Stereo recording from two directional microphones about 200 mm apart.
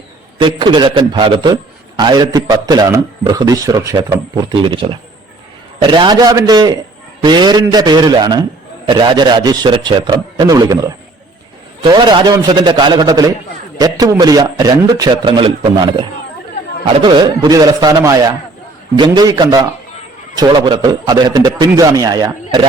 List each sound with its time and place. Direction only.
0.3 s a man's voice: 25° right (ahead or behind)